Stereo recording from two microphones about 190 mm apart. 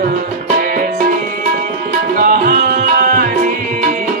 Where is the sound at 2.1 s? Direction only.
50° right (ahead or behind).